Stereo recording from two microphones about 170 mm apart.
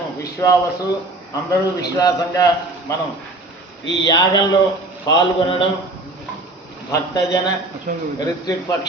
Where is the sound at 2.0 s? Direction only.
20° left (ahead or behind).